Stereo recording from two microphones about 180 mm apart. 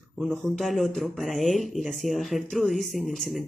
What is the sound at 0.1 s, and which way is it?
A man's voice, centre (ahead or behind).